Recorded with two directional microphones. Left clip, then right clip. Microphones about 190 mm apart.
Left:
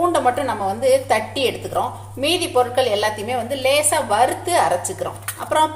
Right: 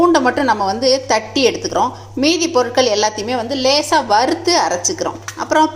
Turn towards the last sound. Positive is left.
turn(degrees=-35)  # may be behind; listen again after turning